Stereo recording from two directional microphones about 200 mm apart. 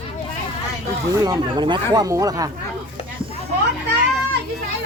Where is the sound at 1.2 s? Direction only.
20° right (ahead or behind).